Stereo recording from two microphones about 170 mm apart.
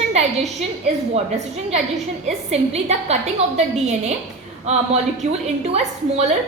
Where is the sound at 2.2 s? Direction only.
40° right (ahead or behind).